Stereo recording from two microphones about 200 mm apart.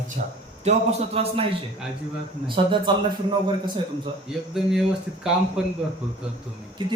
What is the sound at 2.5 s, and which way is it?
Speech, 25° right (ahead or behind).